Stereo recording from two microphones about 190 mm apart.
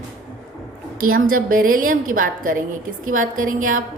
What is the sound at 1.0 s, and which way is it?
A woman's voice, 45° right (ahead or behind).